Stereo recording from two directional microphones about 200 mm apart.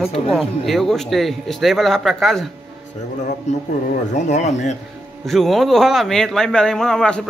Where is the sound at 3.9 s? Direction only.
35° left (ahead or behind).